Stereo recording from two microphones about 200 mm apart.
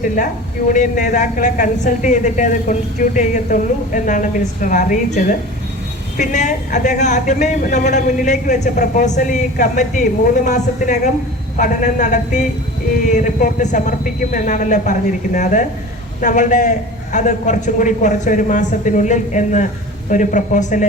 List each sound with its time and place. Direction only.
0.7 s speech: 40° left (ahead or behind)